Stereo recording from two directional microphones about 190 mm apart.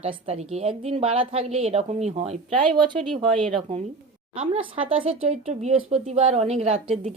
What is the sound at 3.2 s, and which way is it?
Speech, 5° left (ahead or behind).